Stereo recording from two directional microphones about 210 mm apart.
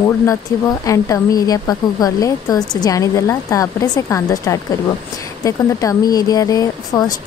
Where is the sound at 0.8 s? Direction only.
15° left (ahead or behind).